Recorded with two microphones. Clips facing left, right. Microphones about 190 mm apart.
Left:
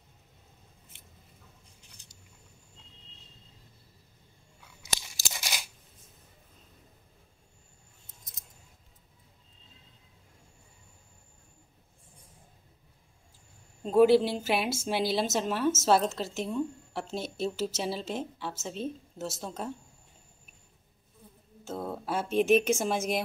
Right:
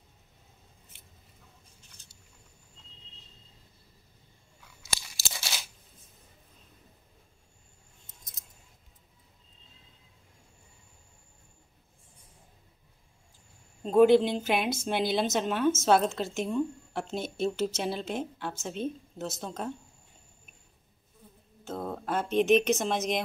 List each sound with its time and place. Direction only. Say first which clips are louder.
4.8 s a sound: left 1 dB; 15° left (ahead or behind)
13.8 s a woman's voice: right 1 dB; 5° left (ahead or behind)
21.6 s a woman's voice: right 1 dB; 5° left (ahead or behind)